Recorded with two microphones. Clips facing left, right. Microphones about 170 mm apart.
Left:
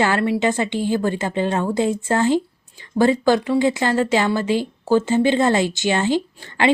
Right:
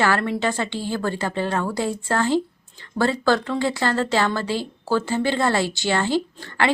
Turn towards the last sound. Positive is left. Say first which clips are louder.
# left 4 dB
turn(degrees=15)  # may be behind; listen again after turning